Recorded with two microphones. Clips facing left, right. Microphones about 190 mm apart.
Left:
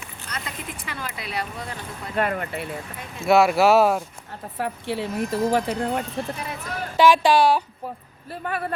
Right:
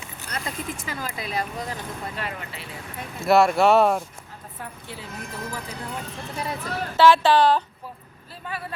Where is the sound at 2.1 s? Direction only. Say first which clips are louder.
Left 9 dB; 55° left (ahead or behind).